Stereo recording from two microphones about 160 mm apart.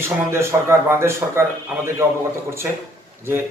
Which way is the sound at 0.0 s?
15° right (ahead or behind).